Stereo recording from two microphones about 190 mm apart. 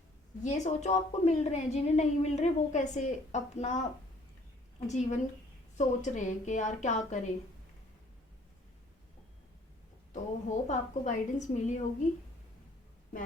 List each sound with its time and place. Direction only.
0.4 s a woman's voice: 40° left (ahead or behind)
4.9 s a woman's voice: 35° left (ahead or behind)
10.1 s a woman's voice: 40° left (ahead or behind)